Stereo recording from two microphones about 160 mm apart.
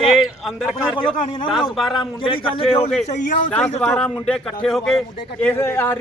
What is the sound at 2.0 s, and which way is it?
Speech, 35° left (ahead or behind).